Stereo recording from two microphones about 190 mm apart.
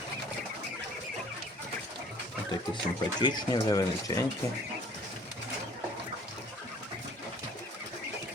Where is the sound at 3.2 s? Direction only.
25° left (ahead or behind).